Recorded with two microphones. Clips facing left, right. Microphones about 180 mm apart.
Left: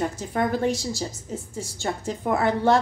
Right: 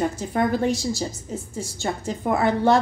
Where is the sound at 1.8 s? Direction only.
10° right (ahead or behind).